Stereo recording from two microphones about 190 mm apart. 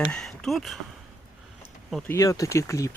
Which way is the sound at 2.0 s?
15° left (ahead or behind).